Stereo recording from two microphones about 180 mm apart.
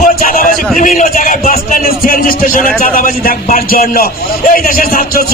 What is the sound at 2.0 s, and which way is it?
A man's voice, 50° left (ahead or behind).